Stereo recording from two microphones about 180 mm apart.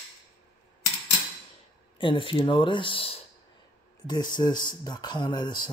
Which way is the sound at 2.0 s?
25° left (ahead or behind).